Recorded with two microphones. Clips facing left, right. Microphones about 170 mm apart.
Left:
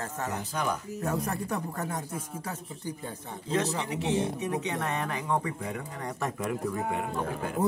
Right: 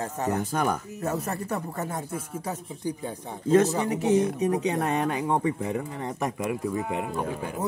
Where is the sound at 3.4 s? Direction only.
45° right (ahead or behind); by 5.8 s 25° right (ahead or behind).